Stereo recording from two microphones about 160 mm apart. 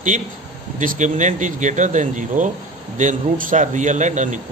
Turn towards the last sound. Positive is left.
turn(degrees=-50)  # may be behind; listen again after turning